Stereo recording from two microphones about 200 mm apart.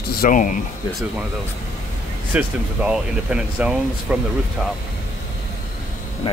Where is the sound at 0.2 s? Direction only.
40° left (ahead or behind).